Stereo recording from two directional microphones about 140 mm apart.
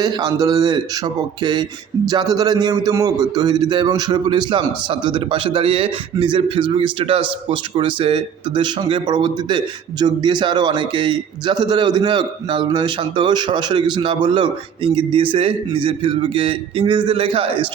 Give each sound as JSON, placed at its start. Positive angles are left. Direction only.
{"t": 0.0, "sound": "a man's voice", "side_deg": -30}